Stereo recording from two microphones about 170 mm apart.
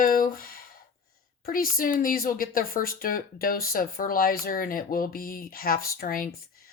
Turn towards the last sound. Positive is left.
turn(degrees=55)  # may be behind; listen again after turning